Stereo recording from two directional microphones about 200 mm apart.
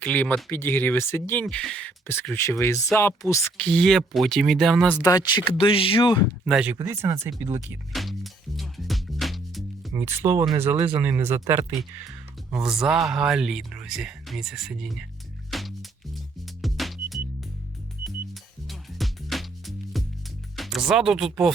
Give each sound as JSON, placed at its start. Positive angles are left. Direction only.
{"t": 0.0, "sound": "speech", "side_deg": 5}
{"t": 4.9, "sound": "speech", "side_deg": 15}
{"t": 6.4, "sound": "speech", "side_deg": -5}
{"t": 6.7, "sound": "speech", "side_deg": -15}
{"t": 7.9, "sound": "music", "side_deg": 0}
{"t": 9.9, "sound": "speech", "side_deg": -10}
{"t": 12.5, "sound": "speech", "side_deg": 0}
{"t": 15.5, "sound": "music", "side_deg": 0}
{"t": 18.7, "sound": "music", "side_deg": 0}
{"t": 20.6, "sound": "speech", "side_deg": 0}